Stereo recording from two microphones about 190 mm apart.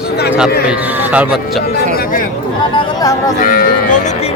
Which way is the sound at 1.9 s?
55° left (ahead or behind).